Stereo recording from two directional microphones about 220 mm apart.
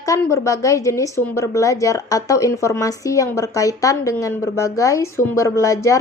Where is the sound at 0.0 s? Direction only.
15° left (ahead or behind).